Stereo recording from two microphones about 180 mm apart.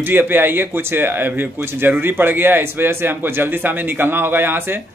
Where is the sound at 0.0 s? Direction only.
10° right (ahead or behind).